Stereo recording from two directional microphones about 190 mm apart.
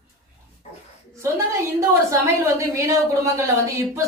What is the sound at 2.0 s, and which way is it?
A woman's voice, 15° right (ahead or behind).